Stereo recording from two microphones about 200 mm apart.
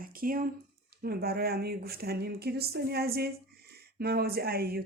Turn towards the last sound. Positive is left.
turn(degrees=-50)  # may be behind; listen again after turning